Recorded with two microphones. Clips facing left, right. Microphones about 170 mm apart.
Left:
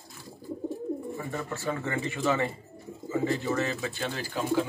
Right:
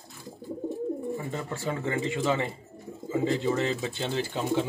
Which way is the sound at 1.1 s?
20° right (ahead or behind).